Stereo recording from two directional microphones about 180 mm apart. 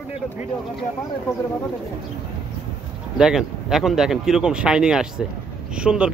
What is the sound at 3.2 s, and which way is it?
Speech, 5° right (ahead or behind).